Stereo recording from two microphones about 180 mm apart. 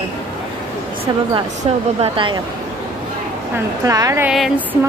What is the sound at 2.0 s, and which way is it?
Speech, 30° right (ahead or behind).